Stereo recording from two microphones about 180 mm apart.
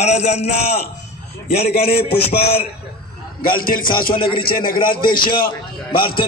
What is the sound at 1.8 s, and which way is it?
Speech, 60° left (ahead or behind).